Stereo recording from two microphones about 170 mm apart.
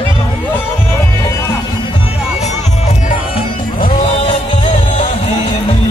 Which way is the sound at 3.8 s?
30° left (ahead or behind).